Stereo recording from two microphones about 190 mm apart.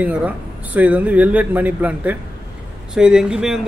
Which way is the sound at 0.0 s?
5° right (ahead or behind).